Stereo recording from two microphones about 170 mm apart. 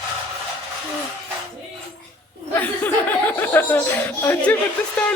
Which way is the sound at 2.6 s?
10° left (ahead or behind).